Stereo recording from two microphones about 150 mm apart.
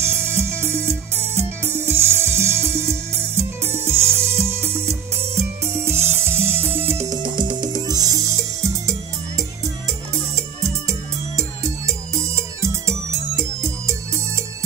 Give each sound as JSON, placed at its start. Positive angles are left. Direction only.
{"t": 0.2, "sound": "music", "side_deg": -15}